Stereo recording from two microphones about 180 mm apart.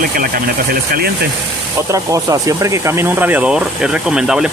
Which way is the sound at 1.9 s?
20° right (ahead or behind).